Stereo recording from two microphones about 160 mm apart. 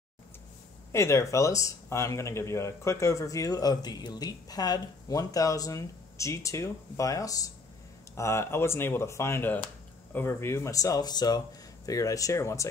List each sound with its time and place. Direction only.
0.9 s speech: 20° left (ahead or behind)